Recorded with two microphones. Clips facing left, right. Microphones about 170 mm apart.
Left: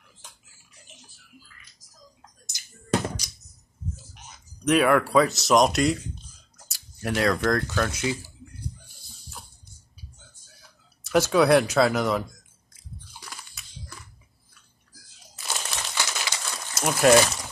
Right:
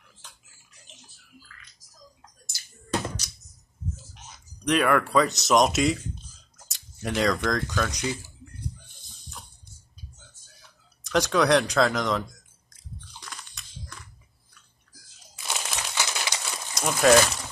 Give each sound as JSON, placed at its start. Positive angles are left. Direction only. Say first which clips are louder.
{"t": 2.5, "sound": "a sound", "louder": "left 4 dB", "side_deg": 20}
{"t": 4.6, "sound": "speech", "louder": "left 2 dB", "side_deg": 5}
{"t": 6.7, "sound": "a sound", "louder": "left 1 dB", "side_deg": 0}
{"t": 7.4, "sound": "speech", "louder": "left 3 dB", "side_deg": 5}
{"t": 11.1, "sound": "speech", "louder": "left 3 dB", "side_deg": 5}
{"t": 13.2, "sound": "biting", "louder": "even", "side_deg": 5}
{"t": 15.3, "sound": "crumpling", "louder": "even", "side_deg": -10}
{"t": 16.7, "sound": "speech", "louder": "left 1 dB", "side_deg": 5}